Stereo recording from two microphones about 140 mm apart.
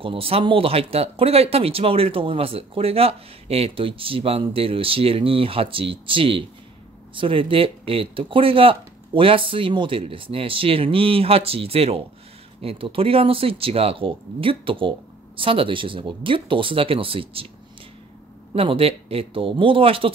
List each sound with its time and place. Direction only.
0.0 s speech: 40° right (ahead or behind)
18.5 s speech: 45° right (ahead or behind)